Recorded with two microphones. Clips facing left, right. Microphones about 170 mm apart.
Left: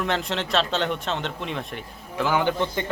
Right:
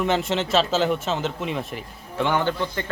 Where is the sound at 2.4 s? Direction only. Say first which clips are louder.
Left 1 dB; 20° left (ahead or behind).